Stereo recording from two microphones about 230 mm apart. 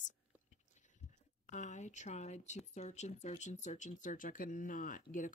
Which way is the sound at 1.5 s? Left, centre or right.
Left.